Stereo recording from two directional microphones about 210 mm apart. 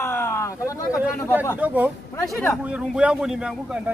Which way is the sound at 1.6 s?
10° right (ahead or behind).